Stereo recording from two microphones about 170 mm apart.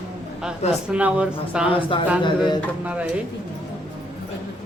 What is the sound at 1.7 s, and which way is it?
Speech, 30° left (ahead or behind).